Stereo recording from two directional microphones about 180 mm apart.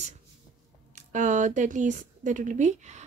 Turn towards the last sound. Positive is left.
turn(degrees=-40)  # may be behind; listen again after turning